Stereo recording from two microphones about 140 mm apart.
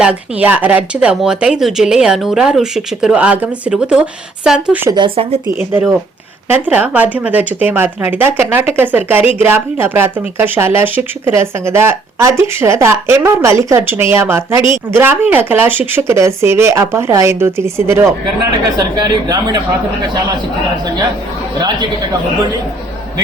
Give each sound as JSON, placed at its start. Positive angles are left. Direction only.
{"t": 0.0, "sound": "speech", "side_deg": -10}
{"t": 4.9, "sound": "speech", "side_deg": -35}
{"t": 5.5, "sound": "speech", "side_deg": -15}
{"t": 18.9, "sound": "a man's voice", "side_deg": -30}